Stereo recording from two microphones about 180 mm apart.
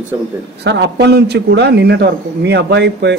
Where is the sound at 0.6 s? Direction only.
75° right (ahead or behind).